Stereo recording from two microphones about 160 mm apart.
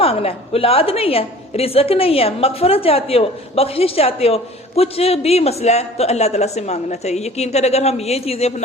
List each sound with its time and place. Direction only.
0.0 s a woman's voice: 35° left (ahead or behind)